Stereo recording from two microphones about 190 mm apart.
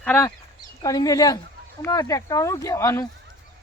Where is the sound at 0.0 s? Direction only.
10° left (ahead or behind).